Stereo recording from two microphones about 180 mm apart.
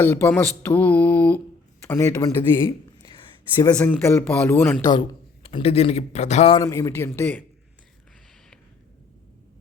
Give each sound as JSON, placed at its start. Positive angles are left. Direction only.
{"t": 0.0, "sound": "speech", "side_deg": 10}
{"t": 2.6, "sound": "a sound", "side_deg": 30}
{"t": 3.8, "sound": "speech", "side_deg": 10}
{"t": 4.8, "sound": "a man's voice", "side_deg": 25}
{"t": 6.6, "sound": "speech", "side_deg": 15}